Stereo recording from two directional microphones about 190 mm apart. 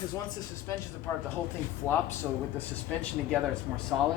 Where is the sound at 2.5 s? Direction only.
10° left (ahead or behind).